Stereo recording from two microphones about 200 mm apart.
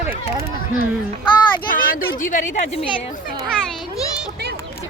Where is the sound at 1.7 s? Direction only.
45° left (ahead or behind).